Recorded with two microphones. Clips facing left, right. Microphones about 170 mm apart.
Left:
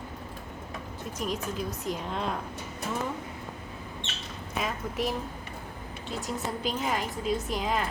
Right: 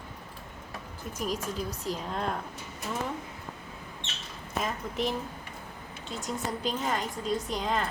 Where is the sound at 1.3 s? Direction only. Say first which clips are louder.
Even; 35° right (ahead or behind).